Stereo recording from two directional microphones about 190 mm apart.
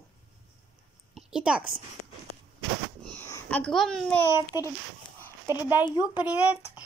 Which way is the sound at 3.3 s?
10° left (ahead or behind).